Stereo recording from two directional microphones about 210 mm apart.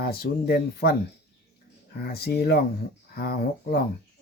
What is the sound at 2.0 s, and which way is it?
Speech, 50° left (ahead or behind).